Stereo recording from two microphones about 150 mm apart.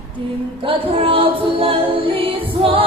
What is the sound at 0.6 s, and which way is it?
Music, 35° right (ahead or behind).